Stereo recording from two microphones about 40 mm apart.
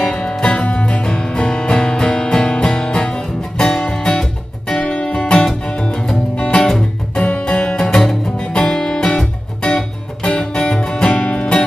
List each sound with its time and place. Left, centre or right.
0.1 s music: left
7.7 s music: centre